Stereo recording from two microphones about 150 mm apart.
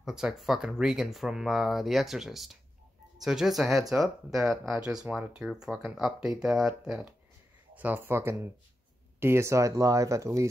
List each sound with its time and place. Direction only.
0.0 s speech: 5° right (ahead or behind); by 10.5 s 20° right (ahead or behind)